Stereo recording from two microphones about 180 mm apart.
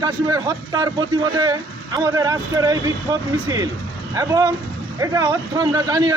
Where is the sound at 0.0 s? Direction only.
20° right (ahead or behind).